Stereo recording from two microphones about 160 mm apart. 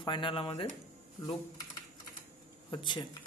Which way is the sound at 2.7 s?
30° left (ahead or behind).